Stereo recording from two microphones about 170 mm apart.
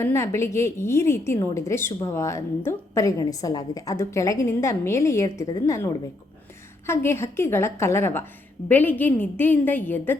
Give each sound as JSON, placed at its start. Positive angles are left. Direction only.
{"t": 0.0, "sound": "a woman's voice", "side_deg": 15}